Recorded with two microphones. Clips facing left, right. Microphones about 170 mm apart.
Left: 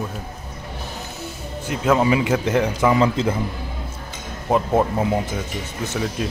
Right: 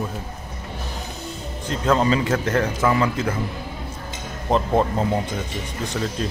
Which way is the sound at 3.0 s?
25° left (ahead or behind).